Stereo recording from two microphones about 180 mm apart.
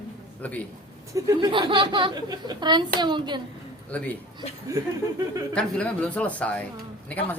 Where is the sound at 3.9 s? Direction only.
5° left (ahead or behind).